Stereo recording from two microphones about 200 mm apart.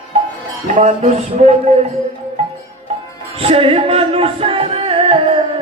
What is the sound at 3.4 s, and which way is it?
Music, 30° right (ahead or behind).